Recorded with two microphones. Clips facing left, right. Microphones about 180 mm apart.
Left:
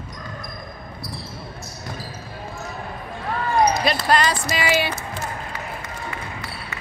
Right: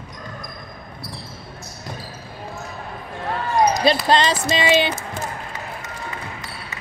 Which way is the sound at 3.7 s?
30° right (ahead or behind).